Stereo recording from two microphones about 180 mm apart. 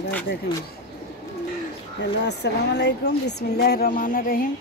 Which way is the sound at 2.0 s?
70° left (ahead or behind).